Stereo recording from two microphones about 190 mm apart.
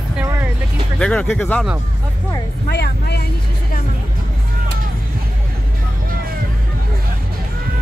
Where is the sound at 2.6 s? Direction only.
55° left (ahead or behind).